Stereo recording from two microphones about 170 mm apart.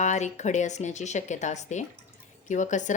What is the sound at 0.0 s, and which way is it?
A woman's voice, 45° left (ahead or behind).